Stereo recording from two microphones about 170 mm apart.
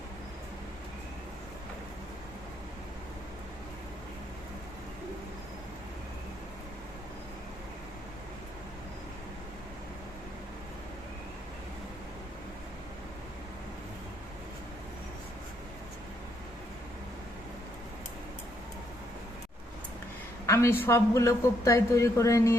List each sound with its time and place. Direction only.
20.5 s a man's voice: 15° left (ahead or behind)